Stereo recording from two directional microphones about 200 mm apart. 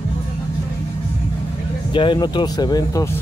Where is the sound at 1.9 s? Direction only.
25° left (ahead or behind).